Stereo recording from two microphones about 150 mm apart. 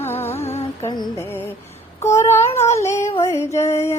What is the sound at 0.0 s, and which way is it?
Music, 15° left (ahead or behind).